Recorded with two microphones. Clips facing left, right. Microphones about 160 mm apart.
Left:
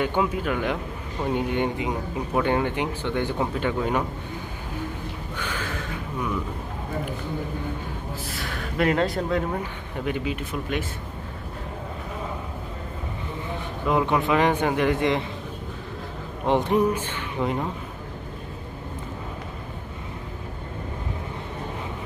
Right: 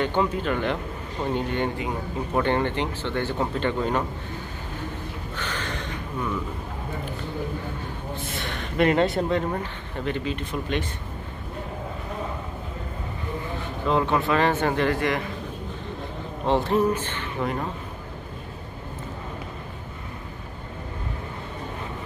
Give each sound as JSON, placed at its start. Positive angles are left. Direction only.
{"t": 0.0, "sound": "speech", "side_deg": 10}
{"t": 5.3, "sound": "a sound", "side_deg": 10}
{"t": 8.1, "sound": "speech", "side_deg": 0}
{"t": 13.8, "sound": "speech", "side_deg": 15}
{"t": 16.4, "sound": "speech", "side_deg": 15}